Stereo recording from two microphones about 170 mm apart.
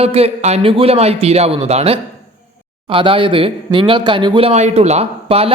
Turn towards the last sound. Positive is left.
turn(degrees=-35)  # may be behind; listen again after turning